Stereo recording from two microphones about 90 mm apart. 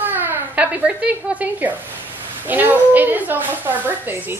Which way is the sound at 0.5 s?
15° right (ahead or behind).